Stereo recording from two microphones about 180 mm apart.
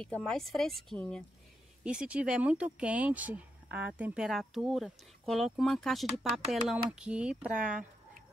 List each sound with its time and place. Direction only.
0.0 s speech: centre (ahead or behind)
1.8 s speech: 5° right (ahead or behind)
7.4 s speech: 50° right (ahead or behind)